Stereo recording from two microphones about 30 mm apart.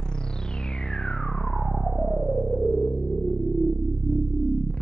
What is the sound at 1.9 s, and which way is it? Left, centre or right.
Synthesizer, centre.